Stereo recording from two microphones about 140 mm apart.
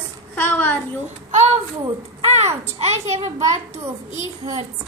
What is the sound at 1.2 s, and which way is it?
A woman's voice, 50° right (ahead or behind).